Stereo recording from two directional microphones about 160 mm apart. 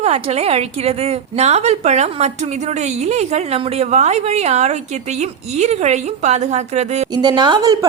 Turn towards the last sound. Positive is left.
turn(degrees=-25)  # may be behind; listen again after turning